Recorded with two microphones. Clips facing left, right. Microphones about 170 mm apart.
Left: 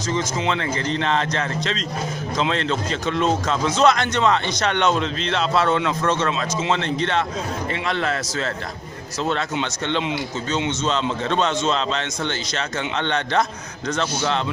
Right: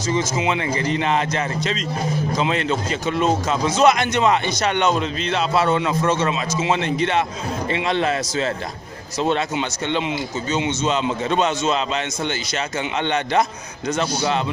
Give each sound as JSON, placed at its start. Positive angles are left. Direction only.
{"t": 0.1, "sound": "a man's voice", "side_deg": -10}
{"t": 9.6, "sound": "a man's voice", "side_deg": -5}